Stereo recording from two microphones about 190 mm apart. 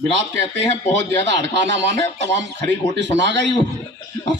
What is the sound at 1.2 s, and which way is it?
A man's voice, 70° right (ahead or behind).